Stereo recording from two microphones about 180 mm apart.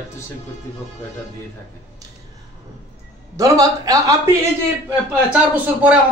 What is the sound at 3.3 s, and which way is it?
A man's voice, 20° right (ahead or behind).